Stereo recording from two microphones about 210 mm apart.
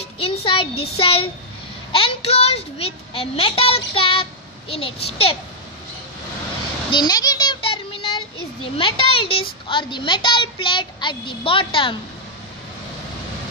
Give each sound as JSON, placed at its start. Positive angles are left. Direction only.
{"t": 0.0, "sound": "child singing", "side_deg": 25}
{"t": 1.9, "sound": "a child's voice", "side_deg": 25}
{"t": 6.9, "sound": "a sound", "side_deg": 20}
{"t": 8.7, "sound": "a child's voice", "side_deg": 25}